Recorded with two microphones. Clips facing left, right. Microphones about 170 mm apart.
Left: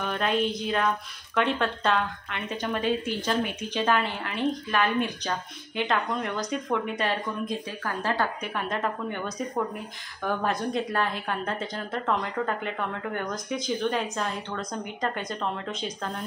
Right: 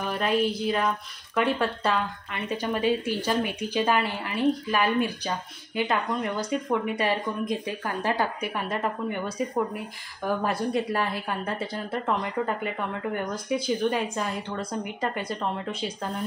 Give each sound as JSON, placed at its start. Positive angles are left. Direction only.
{"t": 0.0, "sound": "a woman's voice", "side_deg": -5}